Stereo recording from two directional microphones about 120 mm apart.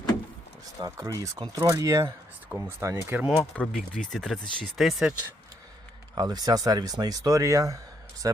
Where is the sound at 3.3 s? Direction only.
10° left (ahead or behind).